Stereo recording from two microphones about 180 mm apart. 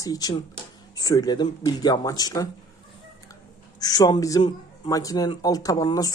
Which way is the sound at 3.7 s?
20° left (ahead or behind).